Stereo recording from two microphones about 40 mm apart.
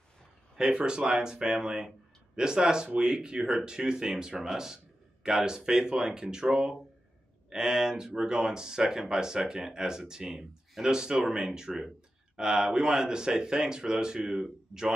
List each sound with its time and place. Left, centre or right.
0.7 s speech: right